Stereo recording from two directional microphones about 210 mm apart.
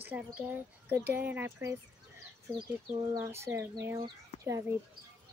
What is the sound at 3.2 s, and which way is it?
Speech, 10° right (ahead or behind).